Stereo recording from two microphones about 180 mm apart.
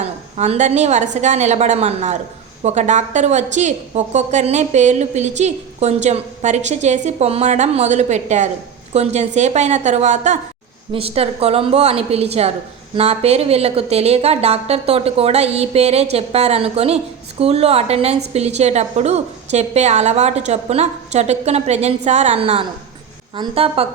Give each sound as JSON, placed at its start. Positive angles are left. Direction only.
{"t": 0.0, "sound": "a woman's voice", "side_deg": -35}